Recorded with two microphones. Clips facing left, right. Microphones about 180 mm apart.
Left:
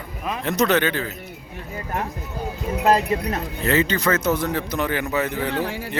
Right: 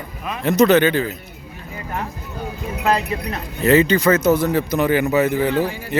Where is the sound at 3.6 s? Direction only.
10° right (ahead or behind).